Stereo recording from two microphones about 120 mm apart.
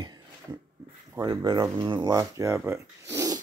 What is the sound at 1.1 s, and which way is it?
Speech, 25° right (ahead or behind).